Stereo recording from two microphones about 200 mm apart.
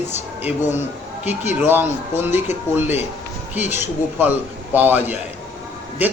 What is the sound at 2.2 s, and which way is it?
Speech, 10° right (ahead or behind).